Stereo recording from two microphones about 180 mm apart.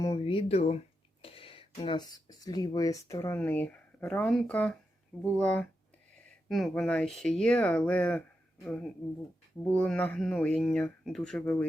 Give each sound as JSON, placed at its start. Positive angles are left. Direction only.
{"t": 0.3, "sound": "speech", "side_deg": 35}